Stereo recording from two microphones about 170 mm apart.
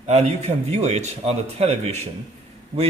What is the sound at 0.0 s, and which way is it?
A man's voice, 40° right (ahead or behind).